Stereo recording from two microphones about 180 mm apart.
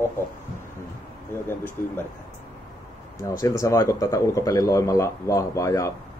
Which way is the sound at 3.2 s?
15° left (ahead or behind).